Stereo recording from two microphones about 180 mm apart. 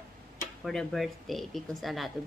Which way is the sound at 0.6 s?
Centre (ahead or behind).